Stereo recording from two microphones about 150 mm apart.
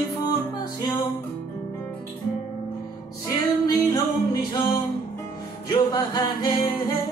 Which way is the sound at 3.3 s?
25° left (ahead or behind).